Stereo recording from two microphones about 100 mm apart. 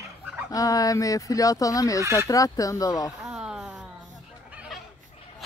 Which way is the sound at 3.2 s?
5° right (ahead or behind).